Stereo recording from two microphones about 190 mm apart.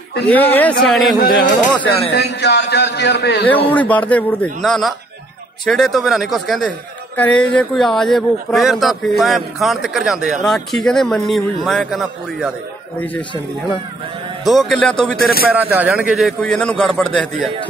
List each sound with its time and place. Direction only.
0.3 s speech: 10° left (ahead or behind)
1.1 s speech: 50° left (ahead or behind)
2.1 s a man's voice: 60° left (ahead or behind)
3.4 s speech: 10° left (ahead or behind)
14.4 s speech: centre (ahead or behind)
15.5 s speech: 10° right (ahead or behind)